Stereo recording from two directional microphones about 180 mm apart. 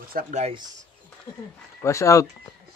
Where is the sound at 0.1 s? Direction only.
45° right (ahead or behind).